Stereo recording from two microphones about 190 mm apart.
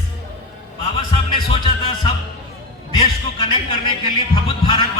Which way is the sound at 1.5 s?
25° left (ahead or behind).